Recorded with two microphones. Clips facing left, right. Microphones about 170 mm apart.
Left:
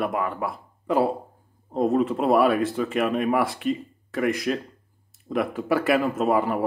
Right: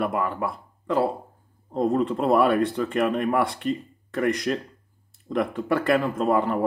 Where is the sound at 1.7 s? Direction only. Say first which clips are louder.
Left 1 dB; 5° left (ahead or behind).